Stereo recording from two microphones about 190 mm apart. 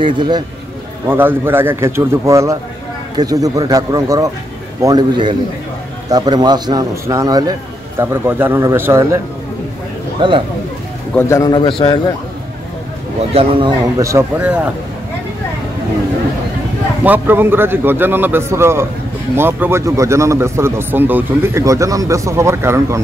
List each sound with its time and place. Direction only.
0.0 s a man's voice: 25° right (ahead or behind)
1.0 s a man's voice: 10° right (ahead or behind)
10.2 s a man's voice: 25° right (ahead or behind)
11.1 s a man's voice: 15° left (ahead or behind)
13.3 s a man's voice: 30° right (ahead or behind); by 14.7 s 5° right (ahead or behind)
17.0 s a man's voice: 10° right (ahead or behind)